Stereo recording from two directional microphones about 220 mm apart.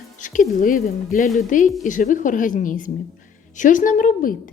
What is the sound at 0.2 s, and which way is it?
A woman's voice, 35° left (ahead or behind).